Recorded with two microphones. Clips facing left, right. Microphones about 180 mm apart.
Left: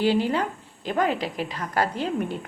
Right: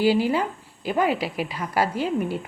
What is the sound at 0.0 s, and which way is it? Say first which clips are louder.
A woman's voice: right 2 dB; 5° right (ahead or behind).